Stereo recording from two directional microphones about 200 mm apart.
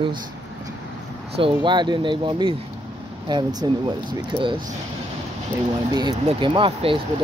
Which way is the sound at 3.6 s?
20° right (ahead or behind).